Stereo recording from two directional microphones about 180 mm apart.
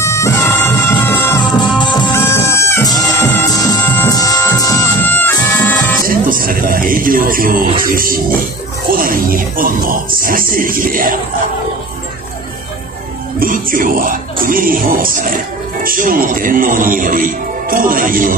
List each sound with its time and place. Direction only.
0.0 s music: 15° left (ahead or behind)
2.3 s music: 15° left (ahead or behind)
6.0 s music: 50° right (ahead or behind)
7.8 s a man's voice: 50° right (ahead or behind)
13.4 s a man's voice: 50° right (ahead or behind)